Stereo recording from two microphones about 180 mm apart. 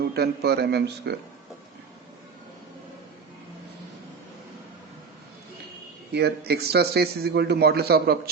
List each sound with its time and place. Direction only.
0.0 s speech: 65° right (ahead or behind)
6.1 s speech: 65° right (ahead or behind)